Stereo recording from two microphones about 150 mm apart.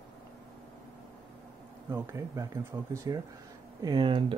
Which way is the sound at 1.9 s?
20° right (ahead or behind).